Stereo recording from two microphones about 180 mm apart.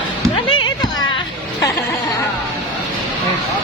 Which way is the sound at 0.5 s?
25° left (ahead or behind).